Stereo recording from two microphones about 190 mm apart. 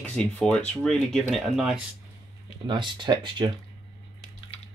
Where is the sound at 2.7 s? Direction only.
25° right (ahead or behind).